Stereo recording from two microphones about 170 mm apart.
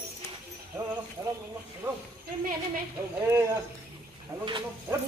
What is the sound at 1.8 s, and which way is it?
Speech, 15° right (ahead or behind).